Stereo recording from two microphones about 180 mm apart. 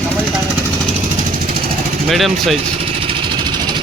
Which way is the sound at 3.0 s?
25° right (ahead or behind).